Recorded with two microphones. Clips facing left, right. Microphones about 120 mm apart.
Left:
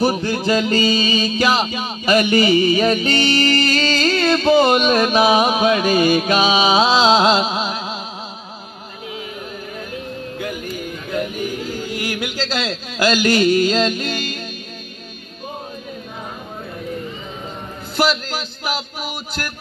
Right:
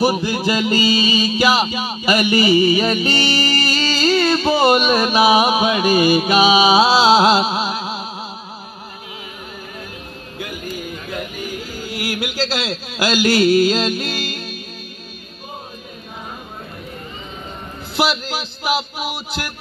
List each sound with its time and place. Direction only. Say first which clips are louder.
0.0 s music: right 1 dB; 10° right (ahead or behind)
11.9 s speech: even; 10° right (ahead or behind)
17.9 s music: left 1 dB; 10° right (ahead or behind)